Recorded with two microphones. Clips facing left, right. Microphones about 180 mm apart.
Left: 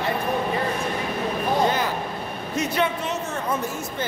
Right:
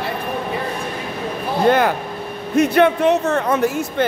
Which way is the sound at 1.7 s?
60° right (ahead or behind).